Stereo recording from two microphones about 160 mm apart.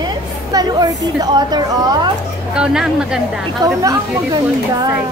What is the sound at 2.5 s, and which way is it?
Speech, 5° right (ahead or behind).